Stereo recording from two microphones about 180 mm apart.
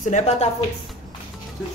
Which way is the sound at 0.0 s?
40° left (ahead or behind).